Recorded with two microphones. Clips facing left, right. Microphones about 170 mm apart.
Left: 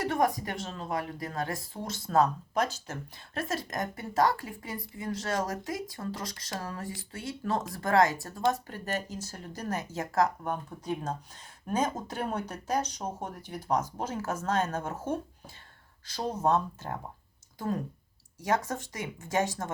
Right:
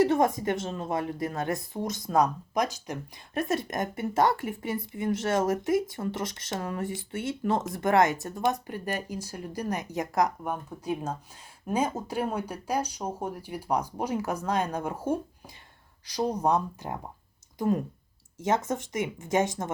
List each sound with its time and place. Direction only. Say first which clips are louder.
0.0 s speech: right 5 dB; 25° right (ahead or behind)